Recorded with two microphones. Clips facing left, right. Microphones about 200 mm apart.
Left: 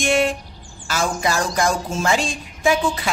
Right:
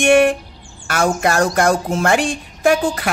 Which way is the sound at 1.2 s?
60° right (ahead or behind).